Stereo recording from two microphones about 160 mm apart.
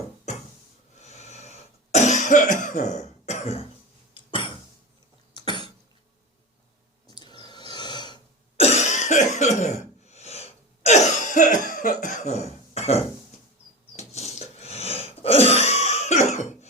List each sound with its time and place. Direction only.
0.9 s cough: 45° left (ahead or behind); by 5.7 s 30° left (ahead or behind)
7.1 s cough: 25° left (ahead or behind)
8.6 s cough: 45° left (ahead or behind)
14.1 s throat clearing: 40° left (ahead or behind)